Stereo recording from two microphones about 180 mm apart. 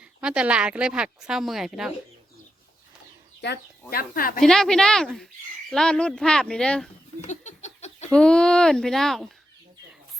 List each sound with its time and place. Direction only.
0.2 s a woman's voice: 5° right (ahead or behind)
3.4 s speech: 60° left (ahead or behind)
4.4 s a woman's voice: 5° left (ahead or behind)
7.2 s a sound: 40° left (ahead or behind)
8.1 s speech: 5° left (ahead or behind)